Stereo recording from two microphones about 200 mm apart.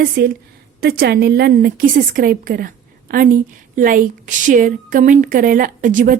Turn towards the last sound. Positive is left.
turn(degrees=-40)  # may be behind; listen again after turning